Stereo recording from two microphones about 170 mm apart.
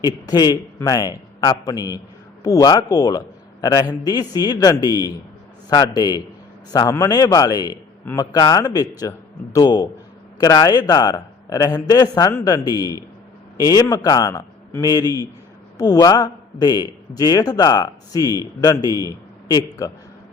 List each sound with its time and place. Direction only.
0.3 s speech: 25° left (ahead or behind)